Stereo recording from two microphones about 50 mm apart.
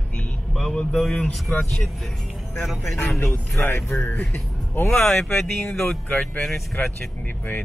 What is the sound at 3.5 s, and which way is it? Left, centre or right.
Speech, left.